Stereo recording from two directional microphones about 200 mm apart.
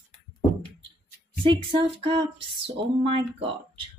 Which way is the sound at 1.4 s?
25° right (ahead or behind).